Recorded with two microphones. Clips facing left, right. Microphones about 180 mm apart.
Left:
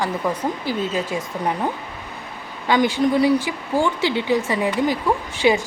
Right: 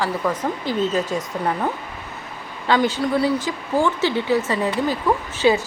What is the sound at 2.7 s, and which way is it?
A woman's voice, 15° left (ahead or behind).